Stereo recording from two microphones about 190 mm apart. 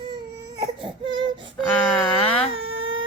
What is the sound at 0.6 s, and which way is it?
Baby cry, 25° right (ahead or behind).